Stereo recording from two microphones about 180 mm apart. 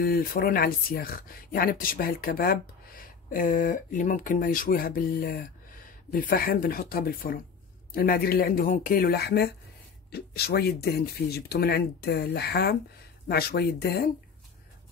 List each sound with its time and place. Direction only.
0.0 s speech: 55° left (ahead or behind)